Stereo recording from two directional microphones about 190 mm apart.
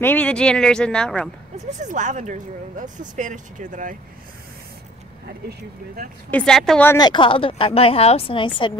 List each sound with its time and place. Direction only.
0.0 s speech: 10° left (ahead or behind)
1.8 s speech: 40° right (ahead or behind)
6.3 s speech: 5° left (ahead or behind)
6.9 s a woman's voice: 20° left (ahead or behind)